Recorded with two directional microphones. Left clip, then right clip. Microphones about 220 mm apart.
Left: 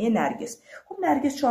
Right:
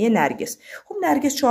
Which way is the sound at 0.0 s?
35° right (ahead or behind).